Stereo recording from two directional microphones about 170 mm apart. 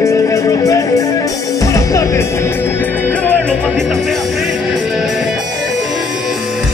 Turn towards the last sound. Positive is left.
turn(degrees=0)  # may be behind; listen again after turning